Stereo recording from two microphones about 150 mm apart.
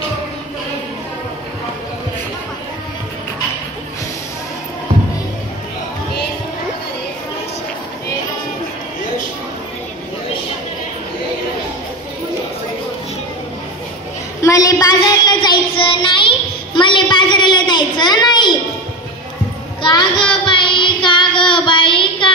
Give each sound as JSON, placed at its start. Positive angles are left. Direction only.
{"t": 14.4, "sound": "child singing", "side_deg": 20}
{"t": 19.8, "sound": "child singing", "side_deg": 30}